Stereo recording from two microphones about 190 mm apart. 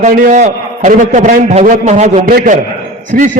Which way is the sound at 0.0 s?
45° right (ahead or behind).